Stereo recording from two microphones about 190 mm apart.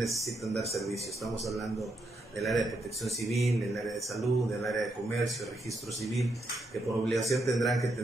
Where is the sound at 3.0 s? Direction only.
Centre (ahead or behind).